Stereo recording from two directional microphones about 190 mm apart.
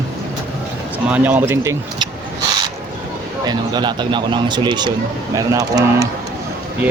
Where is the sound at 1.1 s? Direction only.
10° right (ahead or behind).